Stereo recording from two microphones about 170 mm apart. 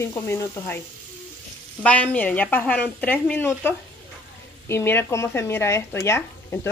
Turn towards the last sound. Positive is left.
turn(degrees=15)  # may be behind; listen again after turning